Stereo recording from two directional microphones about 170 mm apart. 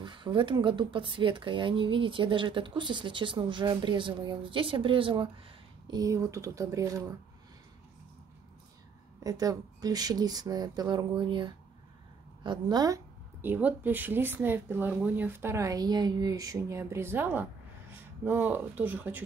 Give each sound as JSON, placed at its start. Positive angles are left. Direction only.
{"t": 0.0, "sound": "speech", "side_deg": -30}
{"t": 9.2, "sound": "speech", "side_deg": -20}